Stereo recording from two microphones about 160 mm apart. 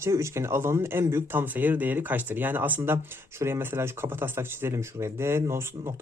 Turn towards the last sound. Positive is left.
turn(degrees=-15)  # may be behind; listen again after turning